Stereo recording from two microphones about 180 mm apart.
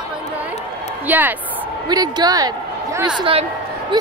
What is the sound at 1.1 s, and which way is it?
Speech, 10° right (ahead or behind).